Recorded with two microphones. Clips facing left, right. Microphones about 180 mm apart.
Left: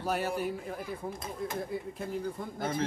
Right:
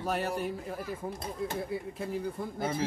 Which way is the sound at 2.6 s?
5° right (ahead or behind).